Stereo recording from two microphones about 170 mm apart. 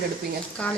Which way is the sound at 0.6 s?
5° left (ahead or behind).